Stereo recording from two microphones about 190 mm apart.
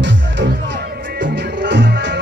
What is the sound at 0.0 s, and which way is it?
Music, 70° right (ahead or behind).